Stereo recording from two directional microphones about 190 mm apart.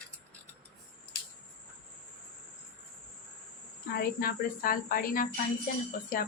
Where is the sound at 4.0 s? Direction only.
50° left (ahead or behind).